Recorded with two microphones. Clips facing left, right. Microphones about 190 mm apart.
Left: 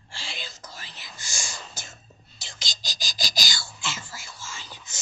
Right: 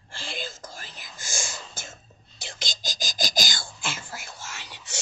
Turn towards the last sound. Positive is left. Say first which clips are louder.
# right 1 dB
turn(degrees=-70)  # may be behind; listen again after turning